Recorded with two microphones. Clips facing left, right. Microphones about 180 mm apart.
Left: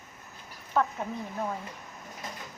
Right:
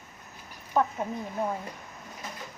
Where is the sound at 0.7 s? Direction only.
15° right (ahead or behind).